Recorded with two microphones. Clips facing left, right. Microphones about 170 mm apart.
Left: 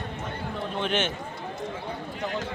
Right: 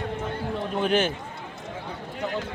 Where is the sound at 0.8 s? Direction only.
35° right (ahead or behind).